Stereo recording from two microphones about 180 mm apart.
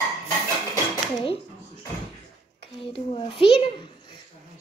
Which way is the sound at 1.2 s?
30° left (ahead or behind).